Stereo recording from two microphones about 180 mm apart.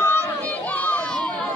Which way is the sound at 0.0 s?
10° left (ahead or behind).